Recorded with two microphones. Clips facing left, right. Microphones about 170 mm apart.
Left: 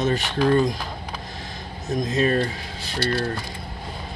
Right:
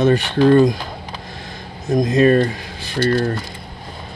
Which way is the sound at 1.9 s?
55° right (ahead or behind).